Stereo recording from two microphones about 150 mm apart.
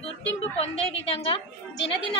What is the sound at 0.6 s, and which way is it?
Speech, 40° left (ahead or behind).